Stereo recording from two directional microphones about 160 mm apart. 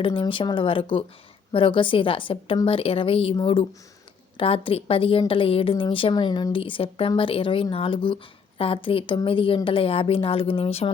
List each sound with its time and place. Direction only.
0.0 s a woman's voice: 35° left (ahead or behind)